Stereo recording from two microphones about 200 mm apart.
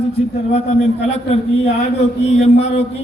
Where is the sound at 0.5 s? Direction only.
35° left (ahead or behind).